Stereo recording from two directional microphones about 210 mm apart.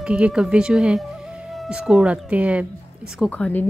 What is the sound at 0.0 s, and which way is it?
A woman's voice, 5° right (ahead or behind).